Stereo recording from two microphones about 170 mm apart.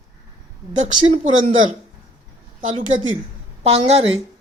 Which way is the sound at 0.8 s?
45° right (ahead or behind).